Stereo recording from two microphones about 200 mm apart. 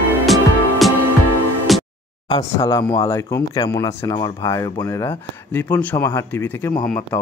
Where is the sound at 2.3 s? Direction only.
20° left (ahead or behind).